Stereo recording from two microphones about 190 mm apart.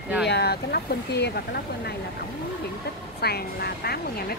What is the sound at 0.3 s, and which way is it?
Speech, 60° left (ahead or behind).